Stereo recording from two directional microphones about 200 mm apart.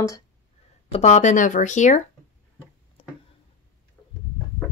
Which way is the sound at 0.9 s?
35° left (ahead or behind).